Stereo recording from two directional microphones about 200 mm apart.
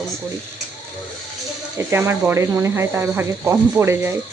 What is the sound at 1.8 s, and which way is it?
Speech, 10° right (ahead or behind).